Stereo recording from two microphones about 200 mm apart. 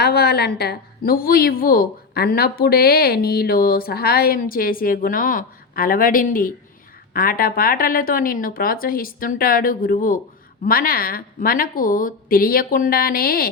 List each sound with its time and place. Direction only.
0.0 s a woman's voice: 55° left (ahead or behind)